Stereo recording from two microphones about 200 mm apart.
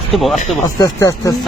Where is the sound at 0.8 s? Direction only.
15° left (ahead or behind).